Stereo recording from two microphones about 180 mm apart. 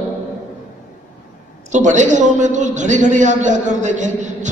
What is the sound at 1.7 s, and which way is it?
A man's voice, 40° right (ahead or behind).